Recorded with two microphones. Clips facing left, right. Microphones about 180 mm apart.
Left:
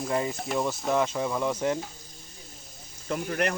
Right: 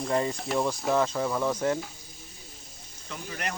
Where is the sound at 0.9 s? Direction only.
10° left (ahead or behind).